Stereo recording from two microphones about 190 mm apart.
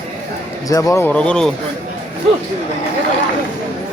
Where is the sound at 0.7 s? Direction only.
15° left (ahead or behind).